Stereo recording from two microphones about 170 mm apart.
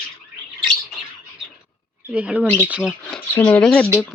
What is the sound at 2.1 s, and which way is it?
Speech, 5° right (ahead or behind).